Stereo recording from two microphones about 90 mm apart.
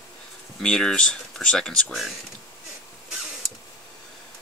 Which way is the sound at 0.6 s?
10° left (ahead or behind).